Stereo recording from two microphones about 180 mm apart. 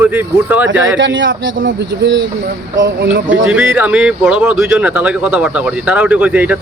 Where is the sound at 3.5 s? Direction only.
10° right (ahead or behind).